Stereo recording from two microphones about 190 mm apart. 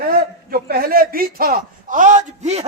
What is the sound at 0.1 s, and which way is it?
A man's voice, 50° right (ahead or behind).